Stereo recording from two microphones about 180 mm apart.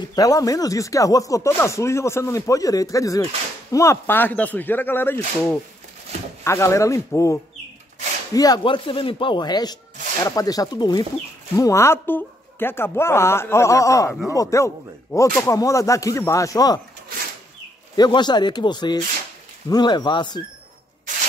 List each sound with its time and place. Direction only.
0.1 s speech: 20° left (ahead or behind)
17.9 s speech: 25° left (ahead or behind)